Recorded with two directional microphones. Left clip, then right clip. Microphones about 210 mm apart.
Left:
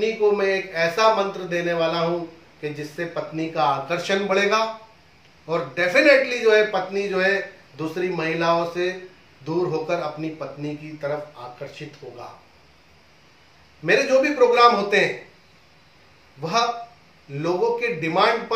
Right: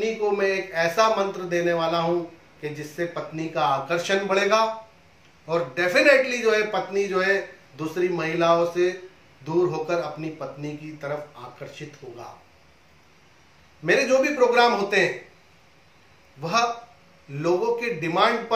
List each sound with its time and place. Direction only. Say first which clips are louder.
0.0 s a man's voice: left 3 dB; 15° right (ahead or behind)
13.8 s a man's voice: left 2 dB; 15° right (ahead or behind)
16.3 s a man's voice: left 1 dB; 15° right (ahead or behind)